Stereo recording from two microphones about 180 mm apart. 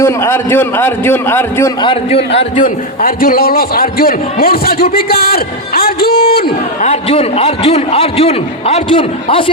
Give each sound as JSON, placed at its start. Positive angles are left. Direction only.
{"t": 0.0, "sound": "a man's voice", "side_deg": 15}
{"t": 1.8, "sound": "a man's voice", "side_deg": 30}
{"t": 2.6, "sound": "a man's voice", "side_deg": 55}
{"t": 6.8, "sound": "a man's voice", "side_deg": 35}